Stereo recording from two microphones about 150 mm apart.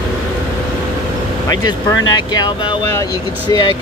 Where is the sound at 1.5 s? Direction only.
25° left (ahead or behind).